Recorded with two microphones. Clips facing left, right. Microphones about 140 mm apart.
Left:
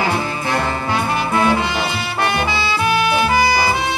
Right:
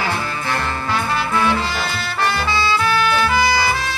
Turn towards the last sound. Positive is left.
turn(degrees=20)  # may be behind; listen again after turning